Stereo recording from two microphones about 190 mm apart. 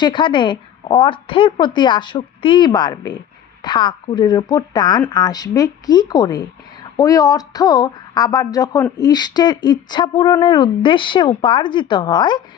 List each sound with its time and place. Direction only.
0.0 s a woman's voice: 25° left (ahead or behind)